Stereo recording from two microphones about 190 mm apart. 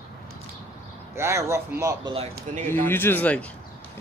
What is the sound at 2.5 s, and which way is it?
Speech, 40° right (ahead or behind).